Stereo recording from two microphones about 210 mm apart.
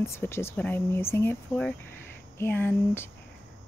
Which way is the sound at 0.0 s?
10° left (ahead or behind).